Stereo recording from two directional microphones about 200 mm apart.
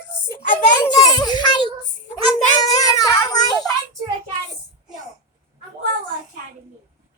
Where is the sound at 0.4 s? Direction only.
40° left (ahead or behind).